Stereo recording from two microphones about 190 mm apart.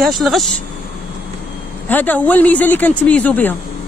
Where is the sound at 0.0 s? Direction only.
Centre (ahead or behind).